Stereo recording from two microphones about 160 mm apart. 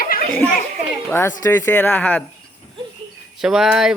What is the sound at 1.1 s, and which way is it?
Speech, 15° left (ahead or behind).